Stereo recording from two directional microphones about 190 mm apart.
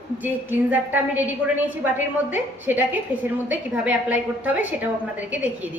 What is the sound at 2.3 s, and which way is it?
A woman's voice, 10° right (ahead or behind).